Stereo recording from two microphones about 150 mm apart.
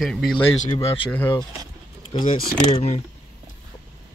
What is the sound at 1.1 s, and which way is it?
Speech, 15° left (ahead or behind).